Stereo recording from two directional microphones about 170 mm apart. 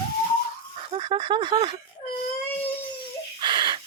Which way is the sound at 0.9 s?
30° right (ahead or behind).